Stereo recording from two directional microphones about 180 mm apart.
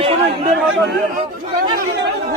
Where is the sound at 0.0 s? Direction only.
35° right (ahead or behind).